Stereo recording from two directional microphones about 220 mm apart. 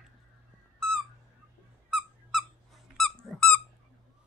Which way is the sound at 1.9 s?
Centre (ahead or behind).